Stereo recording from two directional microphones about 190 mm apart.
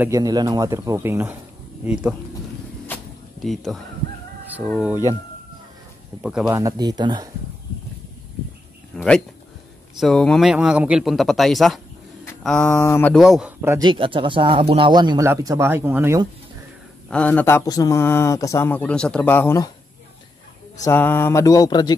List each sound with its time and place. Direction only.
0.0 s speech: 15° right (ahead or behind)
3.4 s speech: centre (ahead or behind)
4.8 s speech: 10° right (ahead or behind)
6.4 s speech: 20° right (ahead or behind)
8.9 s a sound: 5° left (ahead or behind)
9.9 s speech: centre (ahead or behind)
13.8 s speech: 25° right (ahead or behind); by 16.2 s 10° right (ahead or behind)
17.1 s speech: 10° left (ahead or behind)
20.8 s speech: 10° left (ahead or behind)